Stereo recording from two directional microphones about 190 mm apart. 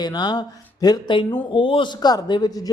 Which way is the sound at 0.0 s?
20° left (ahead or behind).